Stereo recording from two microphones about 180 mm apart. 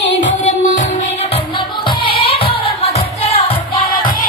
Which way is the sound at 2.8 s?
35° left (ahead or behind).